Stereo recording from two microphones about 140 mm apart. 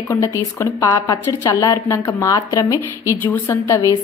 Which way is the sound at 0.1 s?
20° left (ahead or behind).